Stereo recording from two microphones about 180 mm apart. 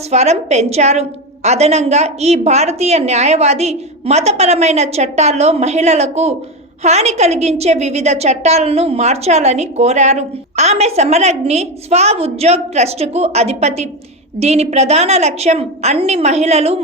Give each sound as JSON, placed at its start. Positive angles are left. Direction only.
{"t": 0.1, "sound": "a woman's voice", "side_deg": -40}